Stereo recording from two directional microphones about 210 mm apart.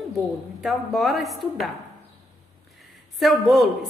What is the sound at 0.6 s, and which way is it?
A woman's voice, centre (ahead or behind).